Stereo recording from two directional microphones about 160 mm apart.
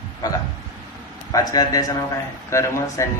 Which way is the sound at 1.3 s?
20° left (ahead or behind).